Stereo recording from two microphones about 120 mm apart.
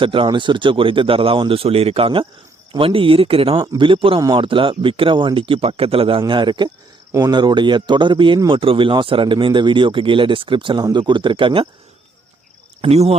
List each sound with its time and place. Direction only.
0.0 s speech: 45° right (ahead or behind)
3.6 s speech: 40° right (ahead or behind)
12.8 s speech: 60° right (ahead or behind)